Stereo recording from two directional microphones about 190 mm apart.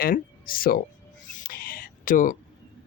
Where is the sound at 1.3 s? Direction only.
45° left (ahead or behind).